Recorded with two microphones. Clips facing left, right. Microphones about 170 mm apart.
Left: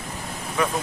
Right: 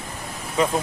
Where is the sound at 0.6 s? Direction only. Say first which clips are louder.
Right 3 dB; 25° right (ahead or behind).